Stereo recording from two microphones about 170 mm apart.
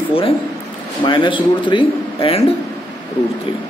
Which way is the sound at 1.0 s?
30° left (ahead or behind).